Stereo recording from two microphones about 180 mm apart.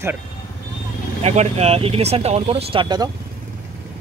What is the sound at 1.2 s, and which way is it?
Speech, 40° right (ahead or behind).